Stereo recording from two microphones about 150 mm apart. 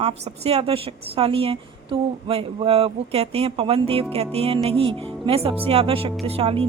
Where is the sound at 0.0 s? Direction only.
45° right (ahead or behind).